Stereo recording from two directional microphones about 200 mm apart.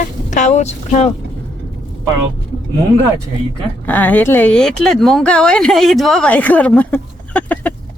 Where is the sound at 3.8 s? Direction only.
10° left (ahead or behind).